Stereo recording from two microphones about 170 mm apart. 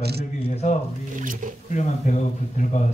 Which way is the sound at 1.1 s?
50° right (ahead or behind).